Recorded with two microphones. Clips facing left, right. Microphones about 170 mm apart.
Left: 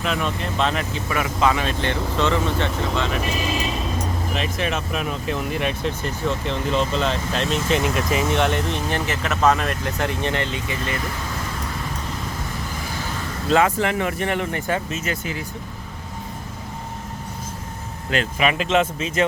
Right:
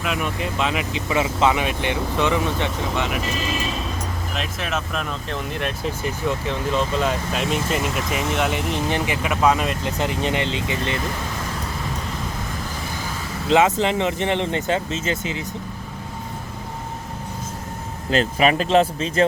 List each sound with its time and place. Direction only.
0.0 s speech: 5° right (ahead or behind)
1.1 s speech: 25° right (ahead or behind)
4.4 s speech: centre (ahead or behind)
6.0 s speech: 10° right (ahead or behind)
13.5 s speech: 20° right (ahead or behind)
18.1 s speech: 35° right (ahead or behind)